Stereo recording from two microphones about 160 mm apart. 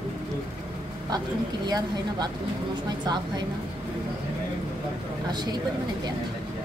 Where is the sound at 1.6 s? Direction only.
25° right (ahead or behind).